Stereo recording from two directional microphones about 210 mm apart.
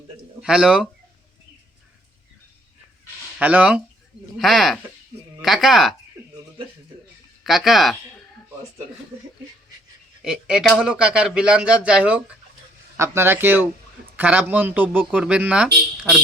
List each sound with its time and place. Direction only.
0.4 s speech: 5° right (ahead or behind)
3.3 s speech: 5° right (ahead or behind)
7.4 s speech: centre (ahead or behind)
10.2 s speech: 5° right (ahead or behind)